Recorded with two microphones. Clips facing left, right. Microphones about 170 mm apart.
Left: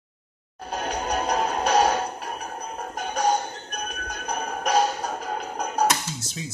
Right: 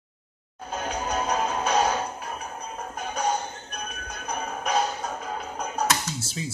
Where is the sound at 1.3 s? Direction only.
35° left (ahead or behind).